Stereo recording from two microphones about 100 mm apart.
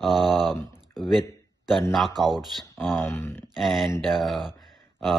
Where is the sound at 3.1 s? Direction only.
25° left (ahead or behind).